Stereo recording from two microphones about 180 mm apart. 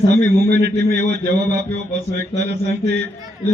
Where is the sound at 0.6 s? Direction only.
70° right (ahead or behind).